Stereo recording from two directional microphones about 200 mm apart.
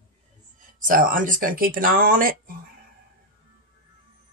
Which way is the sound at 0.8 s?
40° right (ahead or behind).